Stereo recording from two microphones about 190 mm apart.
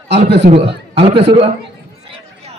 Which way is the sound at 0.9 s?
30° right (ahead or behind).